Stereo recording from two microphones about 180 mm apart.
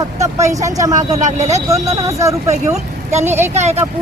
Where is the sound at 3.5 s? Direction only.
40° right (ahead or behind).